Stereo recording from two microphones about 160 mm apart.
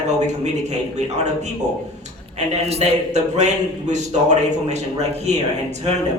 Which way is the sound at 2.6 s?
40° right (ahead or behind).